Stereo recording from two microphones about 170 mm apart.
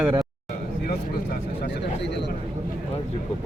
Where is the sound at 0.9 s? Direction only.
80° left.